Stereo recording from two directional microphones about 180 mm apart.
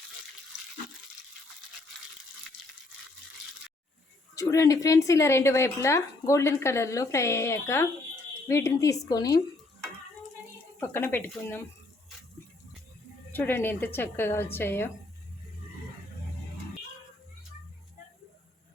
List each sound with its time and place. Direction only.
4.4 s a woman's voice: 20° left (ahead or behind)
10.8 s a woman's voice: 15° left (ahead or behind)
13.3 s a woman's voice: 10° left (ahead or behind)